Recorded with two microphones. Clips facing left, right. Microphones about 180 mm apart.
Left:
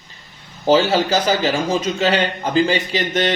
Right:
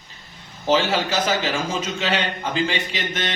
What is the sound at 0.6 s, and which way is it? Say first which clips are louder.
A man's voice: left 5 dB; 35° left (ahead or behind).